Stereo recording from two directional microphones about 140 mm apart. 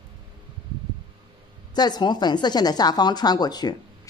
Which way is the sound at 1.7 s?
30° left (ahead or behind).